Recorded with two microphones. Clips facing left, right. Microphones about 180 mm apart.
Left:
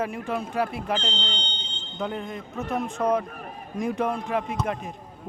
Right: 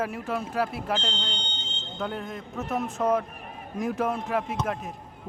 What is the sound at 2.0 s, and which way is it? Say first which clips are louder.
A man's voice: left 2 dB; centre (ahead or behind).